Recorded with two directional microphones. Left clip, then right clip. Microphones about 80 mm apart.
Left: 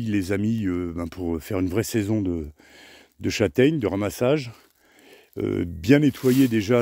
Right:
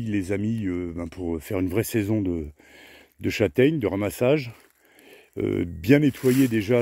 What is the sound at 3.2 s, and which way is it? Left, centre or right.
Speech, centre.